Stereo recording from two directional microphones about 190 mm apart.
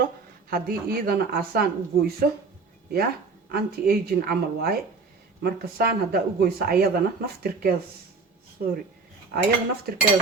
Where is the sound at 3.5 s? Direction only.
55° right (ahead or behind).